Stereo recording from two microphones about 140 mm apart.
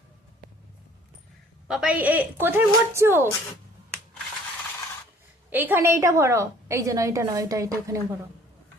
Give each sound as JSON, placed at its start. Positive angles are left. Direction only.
{"t": 1.6, "sound": "a woman's voice", "side_deg": -5}
{"t": 5.5, "sound": "a woman's voice", "side_deg": -15}